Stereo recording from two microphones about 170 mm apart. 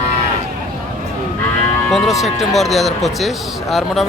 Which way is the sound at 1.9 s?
Centre (ahead or behind).